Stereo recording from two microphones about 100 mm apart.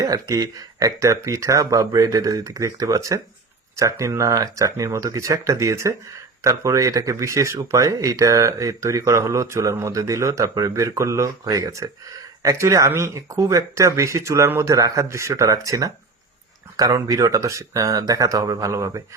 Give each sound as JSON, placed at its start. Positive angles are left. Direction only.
{"t": 0.0, "sound": "speech", "side_deg": -35}